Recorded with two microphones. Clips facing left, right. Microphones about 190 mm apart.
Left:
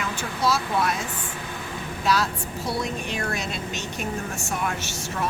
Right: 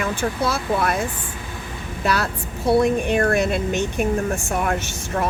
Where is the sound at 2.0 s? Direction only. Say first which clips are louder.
Right 2 dB; 60° right (ahead or behind).